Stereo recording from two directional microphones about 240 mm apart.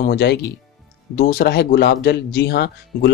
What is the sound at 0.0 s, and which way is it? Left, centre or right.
Speech, left.